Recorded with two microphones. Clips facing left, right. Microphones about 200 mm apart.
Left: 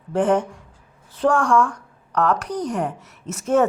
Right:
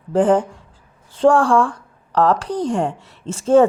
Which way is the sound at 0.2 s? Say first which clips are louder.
Right 4 dB; 30° right (ahead or behind).